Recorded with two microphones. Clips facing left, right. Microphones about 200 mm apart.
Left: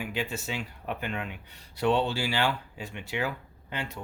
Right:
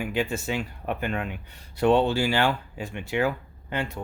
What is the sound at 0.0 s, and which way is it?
A man's voice, 50° right (ahead or behind).